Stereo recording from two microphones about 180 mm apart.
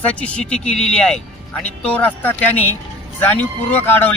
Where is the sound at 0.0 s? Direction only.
5° left (ahead or behind).